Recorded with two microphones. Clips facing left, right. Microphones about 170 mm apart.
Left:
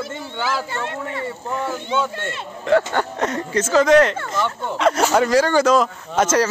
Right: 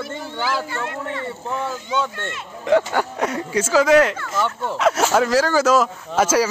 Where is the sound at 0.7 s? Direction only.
25° left (ahead or behind).